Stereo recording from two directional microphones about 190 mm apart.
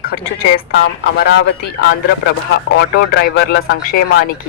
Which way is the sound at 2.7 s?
65° left (ahead or behind).